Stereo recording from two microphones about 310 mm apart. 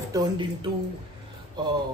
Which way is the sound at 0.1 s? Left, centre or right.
Centre.